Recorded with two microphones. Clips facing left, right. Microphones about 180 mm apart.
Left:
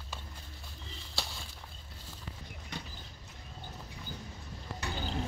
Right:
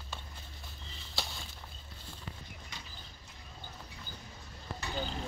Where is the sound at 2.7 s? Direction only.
60° left (ahead or behind).